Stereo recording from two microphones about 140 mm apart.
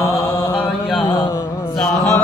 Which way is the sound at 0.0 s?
25° left (ahead or behind).